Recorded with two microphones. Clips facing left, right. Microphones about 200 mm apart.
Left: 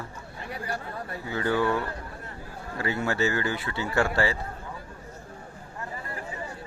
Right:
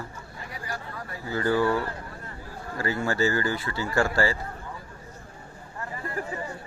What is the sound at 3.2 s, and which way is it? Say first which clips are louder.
Speech: right 2 dB; 20° left (ahead or behind).